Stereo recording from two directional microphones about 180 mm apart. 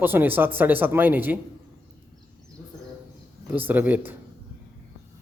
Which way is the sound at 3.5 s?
10° right (ahead or behind).